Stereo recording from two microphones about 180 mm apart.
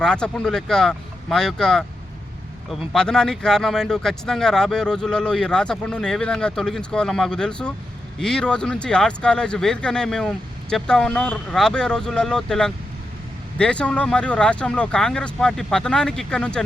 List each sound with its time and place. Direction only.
0.0 s speech: 5° left (ahead or behind)